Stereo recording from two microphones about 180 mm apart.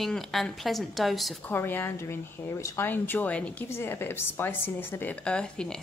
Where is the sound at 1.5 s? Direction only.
10° left (ahead or behind).